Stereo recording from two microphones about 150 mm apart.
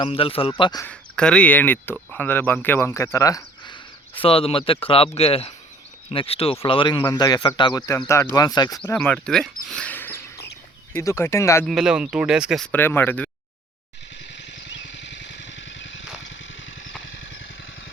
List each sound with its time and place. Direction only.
0.0 s speech: 40° left (ahead or behind)
0.6 s speech: 25° left (ahead or behind)
0.9 s speech: 5° left (ahead or behind); by 3.8 s 25° left (ahead or behind)
4.1 s speech: 40° left (ahead or behind)
9.0 s speech: 5° left (ahead or behind)
11.6 s speech: centre (ahead or behind)
12.7 s speech: 15° left (ahead or behind)